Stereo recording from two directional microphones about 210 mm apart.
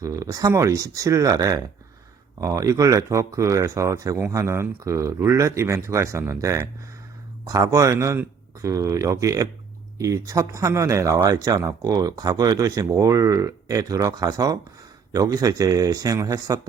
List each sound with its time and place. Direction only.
0.0 s speech: 15° right (ahead or behind)